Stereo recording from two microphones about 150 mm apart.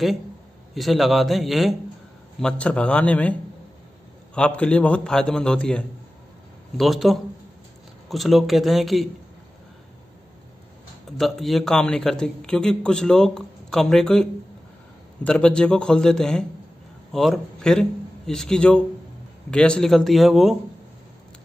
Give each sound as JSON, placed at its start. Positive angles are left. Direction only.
{"t": 0.7, "sound": "a man's voice", "side_deg": 0}
{"t": 4.4, "sound": "a man's voice", "side_deg": 5}
{"t": 11.1, "sound": "a man's voice", "side_deg": 0}